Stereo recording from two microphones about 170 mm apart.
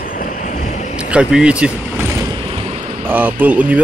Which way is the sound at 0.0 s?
50° left (ahead or behind).